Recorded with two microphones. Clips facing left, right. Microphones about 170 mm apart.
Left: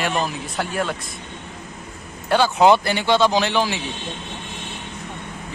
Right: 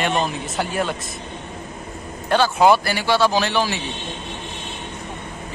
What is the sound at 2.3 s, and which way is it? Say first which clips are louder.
Speech: even; 15° left (ahead or behind).